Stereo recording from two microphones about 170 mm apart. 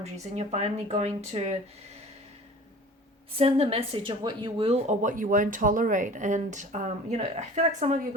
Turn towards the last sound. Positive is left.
turn(degrees=-40)  # may be behind; listen again after turning